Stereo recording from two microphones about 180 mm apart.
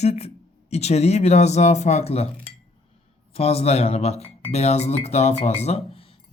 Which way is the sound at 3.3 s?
35° left (ahead or behind).